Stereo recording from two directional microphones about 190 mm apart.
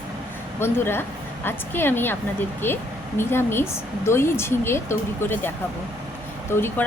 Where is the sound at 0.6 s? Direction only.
10° left (ahead or behind).